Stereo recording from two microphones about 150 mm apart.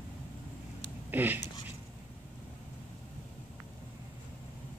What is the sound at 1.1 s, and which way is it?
Speech, 10° right (ahead or behind).